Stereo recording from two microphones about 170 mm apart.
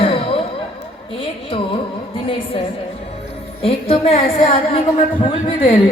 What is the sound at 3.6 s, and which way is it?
A woman's voice, 35° left (ahead or behind).